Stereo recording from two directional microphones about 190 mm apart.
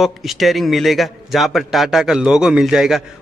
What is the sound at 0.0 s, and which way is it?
A man's voice, centre (ahead or behind).